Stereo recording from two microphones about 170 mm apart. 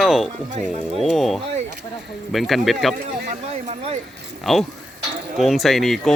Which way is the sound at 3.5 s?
40° right (ahead or behind).